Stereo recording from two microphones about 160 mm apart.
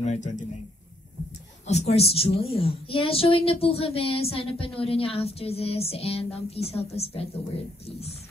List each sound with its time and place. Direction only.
0.0 s a man's voice: 50° left (ahead or behind)
1.7 s speech: 40° left (ahead or behind)